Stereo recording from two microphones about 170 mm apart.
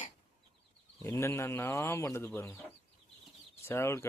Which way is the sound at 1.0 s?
15° left (ahead or behind).